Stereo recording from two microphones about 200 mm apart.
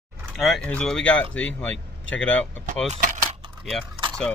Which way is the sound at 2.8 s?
35° right (ahead or behind).